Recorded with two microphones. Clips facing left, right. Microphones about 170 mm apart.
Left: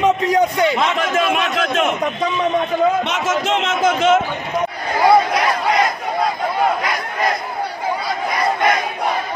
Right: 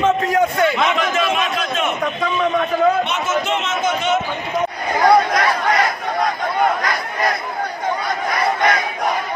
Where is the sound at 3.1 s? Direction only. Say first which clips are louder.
Left 1 dB; 90° left.